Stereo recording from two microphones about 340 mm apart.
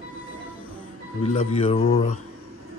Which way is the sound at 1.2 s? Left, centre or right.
Centre.